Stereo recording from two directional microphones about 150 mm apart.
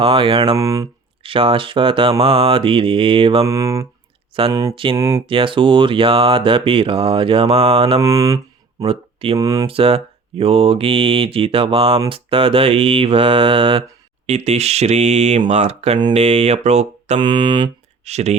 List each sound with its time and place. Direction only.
0.0 s speech: 35° right (ahead or behind)
0.5 s speech: 20° right (ahead or behind)
1.2 s speech: 35° right (ahead or behind)
3.4 s speech: 20° right (ahead or behind)
4.7 s speech: 35° right (ahead or behind)
4.9 s speech: 20° right (ahead or behind)
5.2 s speech: 35° right (ahead or behind)
8.0 s speech: 20° right (ahead or behind)
8.8 s speech: 40° right (ahead or behind)
9.4 s speech: 25° right (ahead or behind)
9.6 s speech: 40° right (ahead or behind)
14.3 s speech: 45° right (ahead or behind)
17.2 s speech: 30° right (ahead or behind)
18.0 s speech: 45° right (ahead or behind)